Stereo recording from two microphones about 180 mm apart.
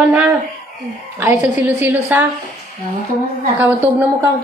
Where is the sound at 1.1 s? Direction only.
10° right (ahead or behind).